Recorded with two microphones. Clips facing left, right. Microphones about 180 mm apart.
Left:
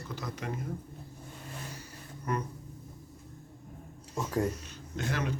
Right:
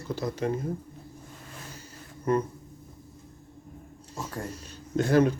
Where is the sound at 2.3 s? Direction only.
25° right (ahead or behind).